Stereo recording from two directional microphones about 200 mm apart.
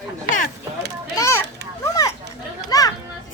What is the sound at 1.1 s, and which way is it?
Children playing, 15° left (ahead or behind).